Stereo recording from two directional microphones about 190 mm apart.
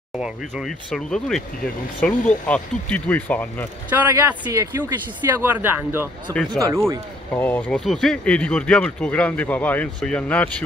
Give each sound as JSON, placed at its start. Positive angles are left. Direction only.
{"t": 0.2, "sound": "speech", "side_deg": 0}
{"t": 3.9, "sound": "speech", "side_deg": -10}
{"t": 7.3, "sound": "speech", "side_deg": 10}